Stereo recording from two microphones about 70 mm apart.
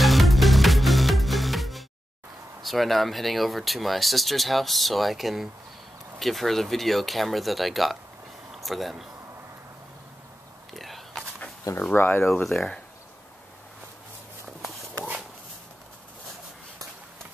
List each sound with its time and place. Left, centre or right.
0.0 s music: centre
2.6 s speech: centre
10.7 s whispering: centre
11.9 s speech: left
12.4 s speech: centre